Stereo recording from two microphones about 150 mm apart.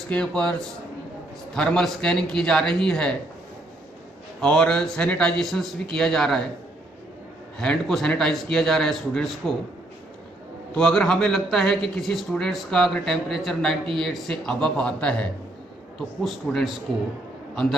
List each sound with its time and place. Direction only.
0.1 s speech: 5° left (ahead or behind)
4.4 s speech: 5° left (ahead or behind)
7.5 s speech: 5° left (ahead or behind)
10.7 s speech: 5° left (ahead or behind)